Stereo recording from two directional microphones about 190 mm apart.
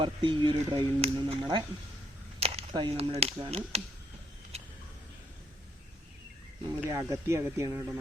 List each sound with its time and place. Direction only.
0.0 s speech: 25° right (ahead or behind)
4.5 s a sound: 35° right (ahead or behind)
6.8 s speech: 15° right (ahead or behind)